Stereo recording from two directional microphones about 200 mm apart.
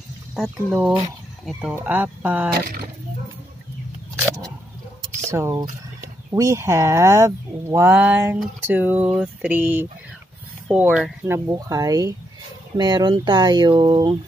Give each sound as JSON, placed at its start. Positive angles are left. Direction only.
{"t": 0.7, "sound": "speech", "side_deg": -5}
{"t": 2.5, "sound": "speech", "side_deg": -50}
{"t": 5.3, "sound": "speech", "side_deg": -15}